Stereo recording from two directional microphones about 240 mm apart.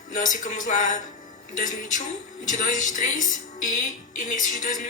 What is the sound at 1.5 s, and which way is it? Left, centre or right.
A woman's voice, left.